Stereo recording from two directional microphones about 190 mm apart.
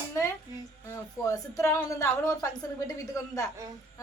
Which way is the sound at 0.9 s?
15° left (ahead or behind).